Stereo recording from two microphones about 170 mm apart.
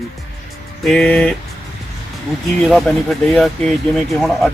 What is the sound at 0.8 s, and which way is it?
Speech, 5° left (ahead or behind).